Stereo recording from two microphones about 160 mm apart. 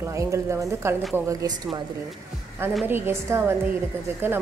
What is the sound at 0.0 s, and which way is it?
A woman's voice, 20° right (ahead or behind).